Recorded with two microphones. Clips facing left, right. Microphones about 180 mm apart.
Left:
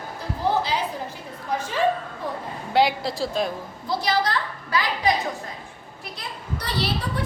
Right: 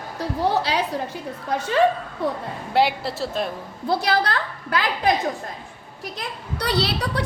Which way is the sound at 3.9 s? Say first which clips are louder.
Right 2 dB; 60° right (ahead or behind).